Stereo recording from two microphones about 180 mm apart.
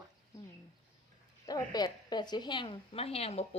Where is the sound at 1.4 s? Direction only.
20° left (ahead or behind).